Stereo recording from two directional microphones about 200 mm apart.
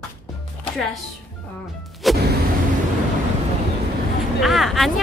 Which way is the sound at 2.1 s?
Centre (ahead or behind).